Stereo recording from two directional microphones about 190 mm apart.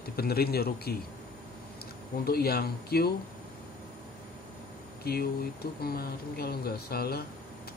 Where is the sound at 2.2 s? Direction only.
55° left (ahead or behind).